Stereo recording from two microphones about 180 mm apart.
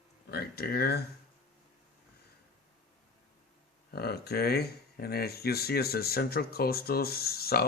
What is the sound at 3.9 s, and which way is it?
Speech, 60° left (ahead or behind).